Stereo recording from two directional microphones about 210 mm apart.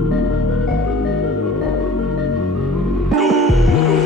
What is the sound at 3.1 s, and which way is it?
Music, centre (ahead or behind).